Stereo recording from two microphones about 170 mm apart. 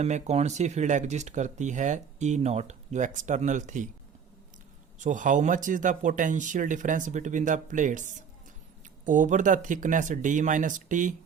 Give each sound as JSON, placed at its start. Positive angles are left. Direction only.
{"t": 0.0, "sound": "speech", "side_deg": -40}
{"t": 4.9, "sound": "speech", "side_deg": -50}